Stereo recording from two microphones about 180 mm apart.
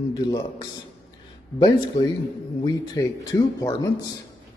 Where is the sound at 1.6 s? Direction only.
25° left (ahead or behind).